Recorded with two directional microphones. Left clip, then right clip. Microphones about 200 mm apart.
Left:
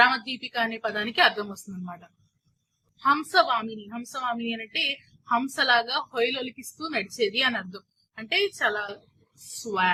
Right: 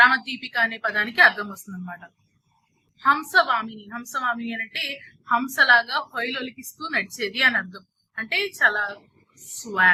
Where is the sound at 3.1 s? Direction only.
15° left (ahead or behind).